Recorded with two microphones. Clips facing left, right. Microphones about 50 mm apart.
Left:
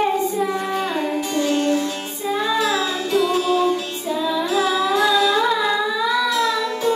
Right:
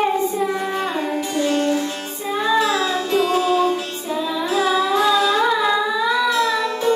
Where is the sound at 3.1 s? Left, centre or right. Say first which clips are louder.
Even; right.